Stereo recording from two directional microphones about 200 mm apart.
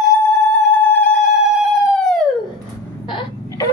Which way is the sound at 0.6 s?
5° left (ahead or behind).